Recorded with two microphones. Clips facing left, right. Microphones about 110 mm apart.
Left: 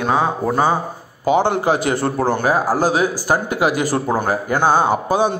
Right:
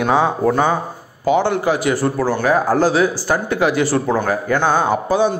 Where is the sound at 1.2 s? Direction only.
20° left (ahead or behind).